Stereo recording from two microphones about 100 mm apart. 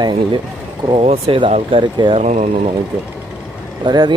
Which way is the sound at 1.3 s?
65° right (ahead or behind).